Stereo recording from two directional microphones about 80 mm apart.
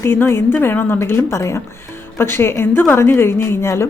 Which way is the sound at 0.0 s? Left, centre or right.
Left.